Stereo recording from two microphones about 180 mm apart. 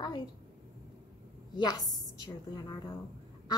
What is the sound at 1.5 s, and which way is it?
A woman's voice, 20° left (ahead or behind).